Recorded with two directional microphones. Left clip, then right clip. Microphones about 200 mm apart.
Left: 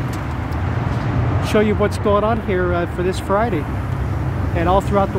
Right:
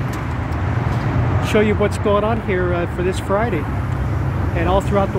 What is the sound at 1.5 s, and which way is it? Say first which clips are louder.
Speech: even; 15° left (ahead or behind).